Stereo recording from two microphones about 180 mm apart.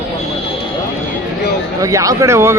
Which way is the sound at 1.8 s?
20° right (ahead or behind).